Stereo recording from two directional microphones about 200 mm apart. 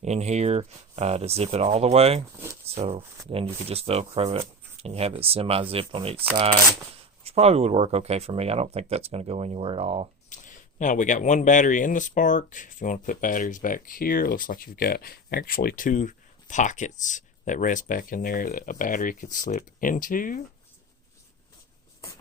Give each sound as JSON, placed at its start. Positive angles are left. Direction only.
{"t": 0.0, "sound": "speech", "side_deg": -35}
{"t": 10.2, "sound": "speech", "side_deg": 40}